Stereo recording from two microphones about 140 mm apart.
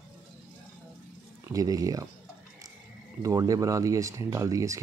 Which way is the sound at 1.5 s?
25° right (ahead or behind).